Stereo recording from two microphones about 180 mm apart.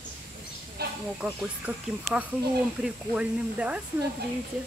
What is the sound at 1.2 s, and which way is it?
Speech, 10° right (ahead or behind).